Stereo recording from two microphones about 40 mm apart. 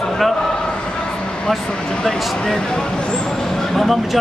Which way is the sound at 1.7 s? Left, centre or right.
Left.